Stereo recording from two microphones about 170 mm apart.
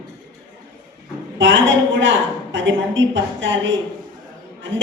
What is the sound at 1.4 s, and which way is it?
A woman's voice, 90° right.